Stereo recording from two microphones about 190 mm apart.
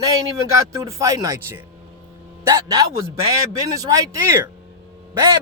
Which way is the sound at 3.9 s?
15° right (ahead or behind).